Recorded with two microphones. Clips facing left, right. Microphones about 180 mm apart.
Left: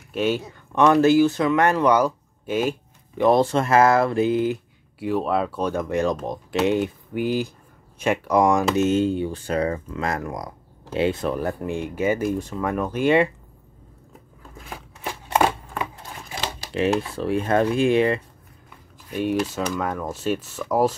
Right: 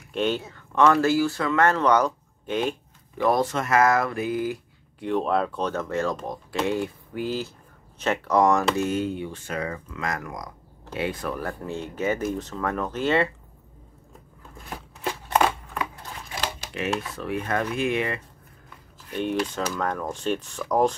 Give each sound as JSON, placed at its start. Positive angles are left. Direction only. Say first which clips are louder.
{"t": 0.1, "sound": "speech", "louder": "left 2 dB", "side_deg": 5}
{"t": 3.2, "sound": "speech", "louder": "left 5 dB", "side_deg": 25}
{"t": 4.9, "sound": "speech", "louder": "left 1 dB", "side_deg": 5}
{"t": 16.7, "sound": "speech", "louder": "left 8 dB", "side_deg": 30}
{"t": 19.0, "sound": "speech", "louder": "left 3 dB", "side_deg": 10}